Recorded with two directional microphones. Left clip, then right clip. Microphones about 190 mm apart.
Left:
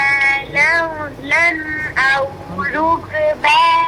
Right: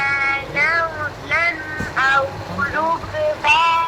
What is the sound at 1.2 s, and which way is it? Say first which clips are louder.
Boat: left 5 dB; 35° left (ahead or behind).